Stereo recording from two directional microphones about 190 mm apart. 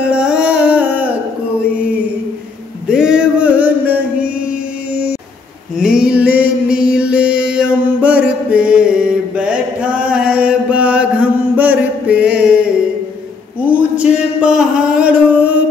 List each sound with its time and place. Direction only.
0.0 s music: 5° right (ahead or behind)
2.9 s music: 5° right (ahead or behind)
5.8 s mantra: 5° right (ahead or behind)
13.7 s a sound: 10° right (ahead or behind)